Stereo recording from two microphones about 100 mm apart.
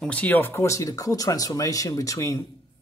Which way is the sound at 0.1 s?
15° left (ahead or behind).